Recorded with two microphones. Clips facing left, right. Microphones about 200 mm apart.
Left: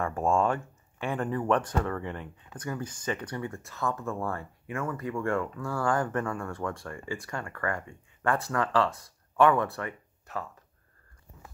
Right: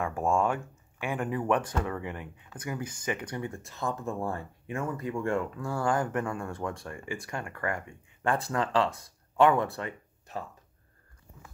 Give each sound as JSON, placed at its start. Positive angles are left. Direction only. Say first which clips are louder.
{"t": 0.0, "sound": "speech", "louder": "left 1 dB", "side_deg": -10}